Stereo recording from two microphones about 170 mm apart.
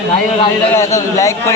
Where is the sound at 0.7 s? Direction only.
20° left (ahead or behind).